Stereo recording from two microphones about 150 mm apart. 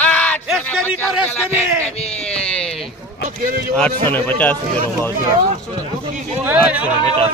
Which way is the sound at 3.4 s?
90° right.